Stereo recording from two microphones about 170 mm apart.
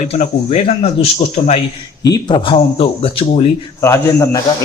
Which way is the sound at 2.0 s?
25° left (ahead or behind).